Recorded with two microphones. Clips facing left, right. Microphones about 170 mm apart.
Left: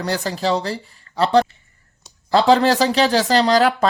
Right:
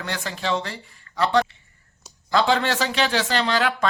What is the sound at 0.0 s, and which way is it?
Speech, 35° left (ahead or behind).